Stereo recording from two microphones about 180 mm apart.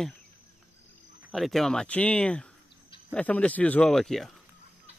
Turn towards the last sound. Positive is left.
turn(degrees=0)  # may be behind; listen again after turning